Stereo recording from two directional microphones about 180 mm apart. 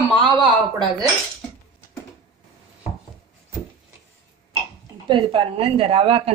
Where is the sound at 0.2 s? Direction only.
25° right (ahead or behind).